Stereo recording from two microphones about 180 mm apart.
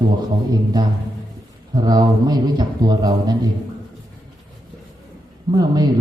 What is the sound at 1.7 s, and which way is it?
Speech, 20° right (ahead or behind).